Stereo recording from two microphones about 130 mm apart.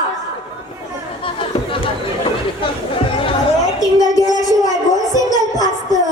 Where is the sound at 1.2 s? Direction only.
40° left (ahead or behind).